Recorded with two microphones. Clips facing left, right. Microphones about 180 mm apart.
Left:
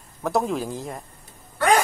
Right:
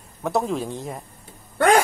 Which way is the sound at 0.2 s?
Centre (ahead or behind).